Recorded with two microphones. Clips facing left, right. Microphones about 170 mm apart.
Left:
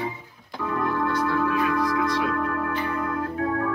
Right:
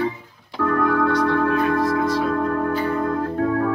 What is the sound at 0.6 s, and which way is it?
Music, 80° right.